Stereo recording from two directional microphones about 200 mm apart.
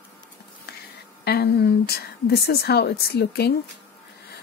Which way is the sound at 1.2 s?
55° left (ahead or behind).